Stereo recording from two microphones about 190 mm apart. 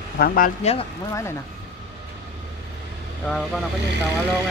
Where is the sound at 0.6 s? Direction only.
35° left (ahead or behind).